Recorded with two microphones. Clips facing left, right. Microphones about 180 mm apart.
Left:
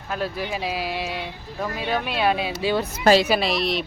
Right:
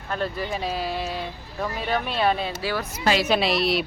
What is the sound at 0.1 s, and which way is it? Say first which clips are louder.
Speech: even; 5° left (ahead or behind).